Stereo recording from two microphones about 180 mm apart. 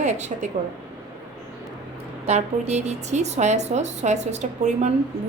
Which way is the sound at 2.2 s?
40° right (ahead or behind).